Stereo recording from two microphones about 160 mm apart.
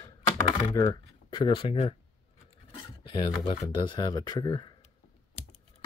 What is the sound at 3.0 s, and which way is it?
Speech, 35° left (ahead or behind).